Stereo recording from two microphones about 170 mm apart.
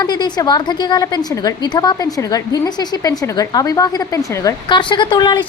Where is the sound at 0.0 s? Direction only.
25° left (ahead or behind).